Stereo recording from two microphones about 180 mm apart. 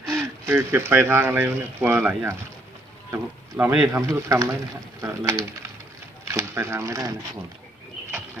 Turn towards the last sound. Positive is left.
turn(degrees=-20)  # may be behind; listen again after turning